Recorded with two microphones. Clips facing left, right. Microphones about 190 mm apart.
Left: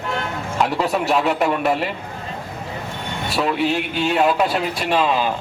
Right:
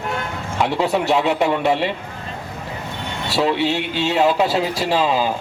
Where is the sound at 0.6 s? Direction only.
20° right (ahead or behind).